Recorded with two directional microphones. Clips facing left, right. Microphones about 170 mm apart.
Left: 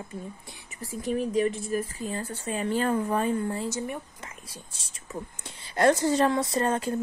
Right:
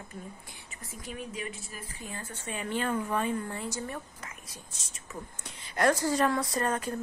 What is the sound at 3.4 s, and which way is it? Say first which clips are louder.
Speech: left 7 dB; 30° left (ahead or behind).